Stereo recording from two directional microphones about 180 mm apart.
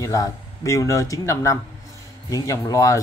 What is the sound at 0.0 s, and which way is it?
Speech, 20° left (ahead or behind).